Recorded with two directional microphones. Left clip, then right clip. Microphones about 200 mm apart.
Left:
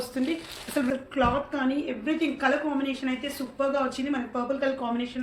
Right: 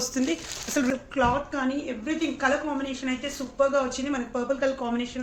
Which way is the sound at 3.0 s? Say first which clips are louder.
Even; 20° right (ahead or behind).